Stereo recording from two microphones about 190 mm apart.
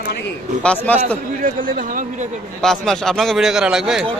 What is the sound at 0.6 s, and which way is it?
Speech, 5° left (ahead or behind).